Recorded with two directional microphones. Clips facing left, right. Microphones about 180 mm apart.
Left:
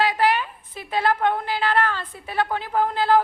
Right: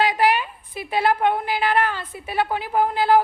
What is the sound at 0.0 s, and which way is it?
A woman's voice, 15° right (ahead or behind).